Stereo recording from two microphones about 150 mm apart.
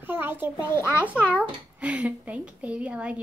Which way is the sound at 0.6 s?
15° left (ahead or behind).